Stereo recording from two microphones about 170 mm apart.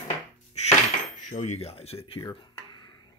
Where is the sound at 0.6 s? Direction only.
40° left (ahead or behind).